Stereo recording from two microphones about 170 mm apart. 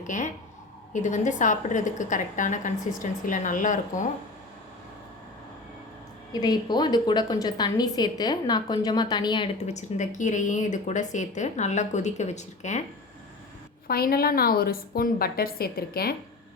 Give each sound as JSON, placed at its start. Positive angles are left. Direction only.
{"t": 0.1, "sound": "speech", "side_deg": 45}
{"t": 6.4, "sound": "a woman's voice", "side_deg": 25}
{"t": 9.6, "sound": "speech", "side_deg": 45}
{"t": 13.8, "sound": "a woman's voice", "side_deg": 60}